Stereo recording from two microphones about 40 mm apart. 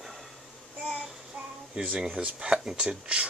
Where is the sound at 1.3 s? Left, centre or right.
Right.